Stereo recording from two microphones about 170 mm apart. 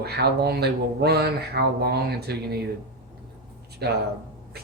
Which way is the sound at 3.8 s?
70° right (ahead or behind).